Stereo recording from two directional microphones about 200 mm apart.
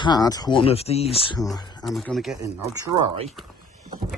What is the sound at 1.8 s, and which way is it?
Speech, 5° left (ahead or behind).